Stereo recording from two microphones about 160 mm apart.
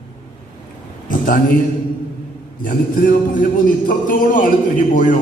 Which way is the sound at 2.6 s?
60° left (ahead or behind).